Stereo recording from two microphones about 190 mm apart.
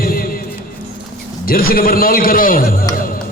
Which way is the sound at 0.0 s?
50° left (ahead or behind).